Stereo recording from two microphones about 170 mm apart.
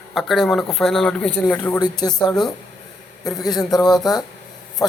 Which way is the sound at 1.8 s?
25° left (ahead or behind).